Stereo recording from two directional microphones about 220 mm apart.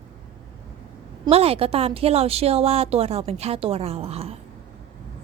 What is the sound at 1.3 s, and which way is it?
A woman's voice, 25° right (ahead or behind).